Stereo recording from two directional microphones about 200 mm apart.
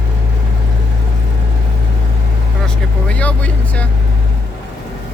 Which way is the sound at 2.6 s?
5° left (ahead or behind).